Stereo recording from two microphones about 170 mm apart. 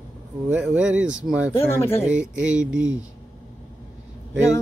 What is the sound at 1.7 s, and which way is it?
Speech, 15° left (ahead or behind).